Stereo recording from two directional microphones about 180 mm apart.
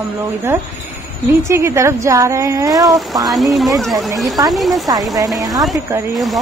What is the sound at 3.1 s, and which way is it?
Speech, centre (ahead or behind).